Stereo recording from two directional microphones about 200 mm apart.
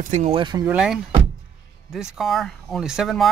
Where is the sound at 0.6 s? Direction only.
5° right (ahead or behind).